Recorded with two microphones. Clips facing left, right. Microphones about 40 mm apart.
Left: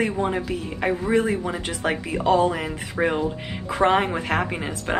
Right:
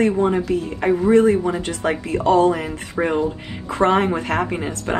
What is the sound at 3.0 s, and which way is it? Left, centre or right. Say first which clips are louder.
Speech: right 3 dB; centre.